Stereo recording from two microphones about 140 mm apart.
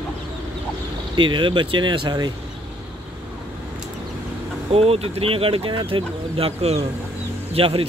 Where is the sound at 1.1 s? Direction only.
35° right (ahead or behind).